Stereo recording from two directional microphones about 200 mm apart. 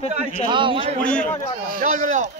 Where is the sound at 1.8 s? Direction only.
40° right (ahead or behind).